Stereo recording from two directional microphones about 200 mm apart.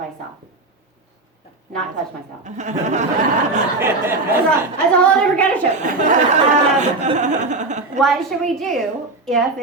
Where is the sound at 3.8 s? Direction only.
10° right (ahead or behind).